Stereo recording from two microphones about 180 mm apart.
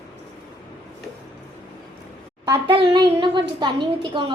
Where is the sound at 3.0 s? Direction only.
25° right (ahead or behind).